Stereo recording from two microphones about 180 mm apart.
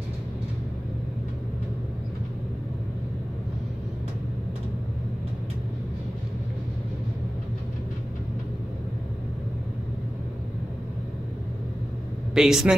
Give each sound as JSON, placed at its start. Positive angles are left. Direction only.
{"t": 12.4, "sound": "speech", "side_deg": -5}